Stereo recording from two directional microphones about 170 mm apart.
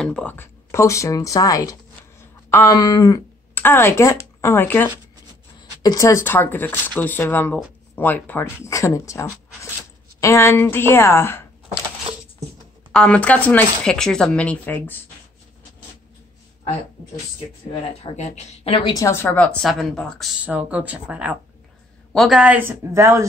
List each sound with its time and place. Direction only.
0.0 s speech: 5° left (ahead or behind)
12.9 s speech: 5° left (ahead or behind)
18.0 s a woman's voice: 40° left (ahead or behind)
18.9 s speech: 15° left (ahead or behind)
20.4 s a woman's voice: 10° right (ahead or behind)